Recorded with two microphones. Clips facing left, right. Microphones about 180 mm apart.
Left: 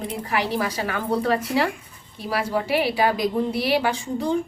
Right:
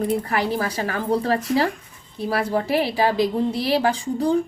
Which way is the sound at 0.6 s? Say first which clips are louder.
Right 1 dB; 40° right (ahead or behind).